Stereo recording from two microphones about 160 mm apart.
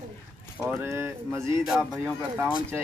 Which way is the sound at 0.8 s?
15° right (ahead or behind).